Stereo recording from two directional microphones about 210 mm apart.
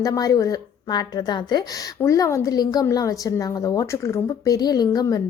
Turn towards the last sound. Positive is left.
turn(degrees=15)  # may be behind; listen again after turning